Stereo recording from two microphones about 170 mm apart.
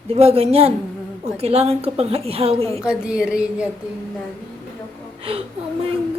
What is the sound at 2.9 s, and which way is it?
Speech, 5° right (ahead or behind).